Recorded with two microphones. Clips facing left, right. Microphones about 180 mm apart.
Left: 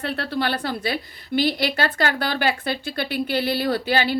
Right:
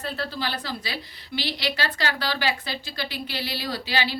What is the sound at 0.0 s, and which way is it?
A woman's voice, 65° left (ahead or behind).